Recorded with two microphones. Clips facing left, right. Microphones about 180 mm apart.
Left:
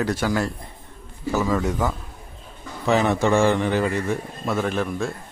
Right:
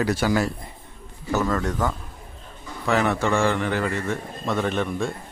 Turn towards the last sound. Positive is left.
turn(degrees=0)  # may be behind; listen again after turning